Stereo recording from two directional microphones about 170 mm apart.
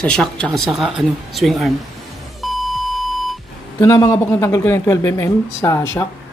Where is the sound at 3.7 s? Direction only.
20° left (ahead or behind).